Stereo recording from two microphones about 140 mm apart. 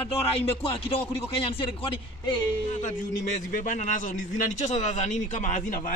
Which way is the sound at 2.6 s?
55° left (ahead or behind).